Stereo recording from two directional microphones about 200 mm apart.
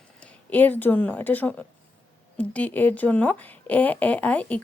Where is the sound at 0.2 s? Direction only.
5° left (ahead or behind).